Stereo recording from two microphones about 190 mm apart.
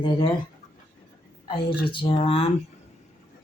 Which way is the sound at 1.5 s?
25° left (ahead or behind).